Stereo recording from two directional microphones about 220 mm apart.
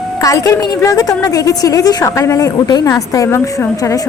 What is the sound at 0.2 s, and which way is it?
Speech, 15° left (ahead or behind).